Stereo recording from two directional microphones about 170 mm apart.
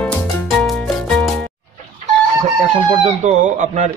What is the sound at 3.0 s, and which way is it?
Speech, 45° right (ahead or behind).